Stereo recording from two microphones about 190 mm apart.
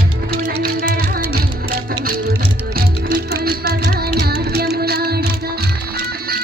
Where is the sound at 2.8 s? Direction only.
55° right (ahead or behind).